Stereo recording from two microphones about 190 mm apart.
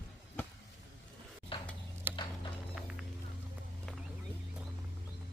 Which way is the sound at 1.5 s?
25° left (ahead or behind).